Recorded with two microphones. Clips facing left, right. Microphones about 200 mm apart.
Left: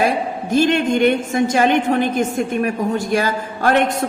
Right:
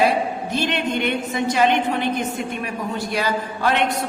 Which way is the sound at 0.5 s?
45° left (ahead or behind).